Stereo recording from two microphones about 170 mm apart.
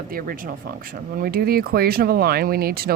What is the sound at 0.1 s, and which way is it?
Speech, 55° right (ahead or behind).